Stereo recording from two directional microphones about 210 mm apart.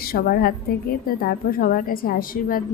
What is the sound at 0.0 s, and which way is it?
A woman's voice, 45° left (ahead or behind).